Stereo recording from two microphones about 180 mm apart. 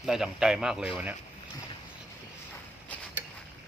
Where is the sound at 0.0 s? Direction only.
5° right (ahead or behind).